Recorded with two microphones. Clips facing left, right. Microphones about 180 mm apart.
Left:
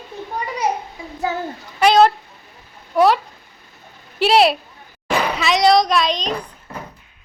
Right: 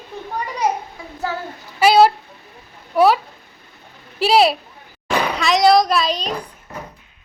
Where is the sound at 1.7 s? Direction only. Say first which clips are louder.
Right 1 dB; 10° right (ahead or behind).